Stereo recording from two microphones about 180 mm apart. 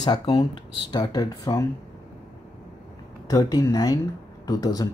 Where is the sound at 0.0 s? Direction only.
25° left (ahead or behind).